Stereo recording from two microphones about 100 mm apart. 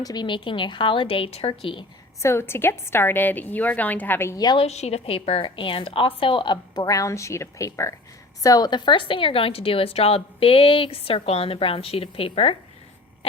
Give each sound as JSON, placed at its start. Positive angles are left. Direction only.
{"t": 0.0, "sound": "a woman's voice", "side_deg": 45}
{"t": 2.2, "sound": "a woman's voice", "side_deg": 25}
{"t": 4.5, "sound": "a woman's voice", "side_deg": 90}
{"t": 5.5, "sound": "a woman's voice", "side_deg": 60}
{"t": 6.8, "sound": "speech", "side_deg": 35}
{"t": 8.4, "sound": "a woman's voice", "side_deg": 40}